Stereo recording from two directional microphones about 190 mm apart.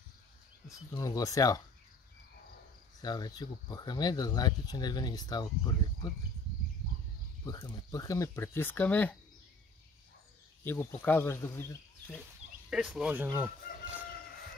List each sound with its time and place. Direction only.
0.7 s speech: 20° left (ahead or behind)
3.0 s speech: 20° left (ahead or behind)
7.4 s speech: 20° left (ahead or behind)
10.6 s speech: 10° left (ahead or behind)
12.6 s speech: 5° right (ahead or behind)